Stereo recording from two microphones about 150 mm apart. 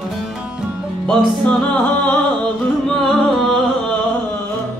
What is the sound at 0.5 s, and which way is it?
Music, 5° left (ahead or behind).